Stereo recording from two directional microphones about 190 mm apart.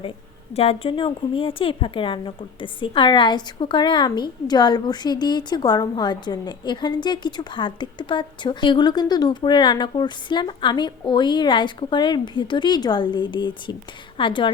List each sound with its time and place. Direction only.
0.5 s a woman's voice: 30° left (ahead or behind)